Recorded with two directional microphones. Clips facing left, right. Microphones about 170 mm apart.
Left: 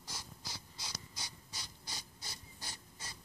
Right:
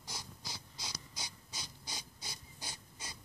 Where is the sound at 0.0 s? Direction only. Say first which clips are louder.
Right 1 dB; 15° right (ahead or behind).